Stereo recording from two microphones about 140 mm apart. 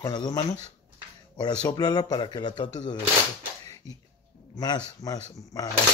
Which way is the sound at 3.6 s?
25° left (ahead or behind).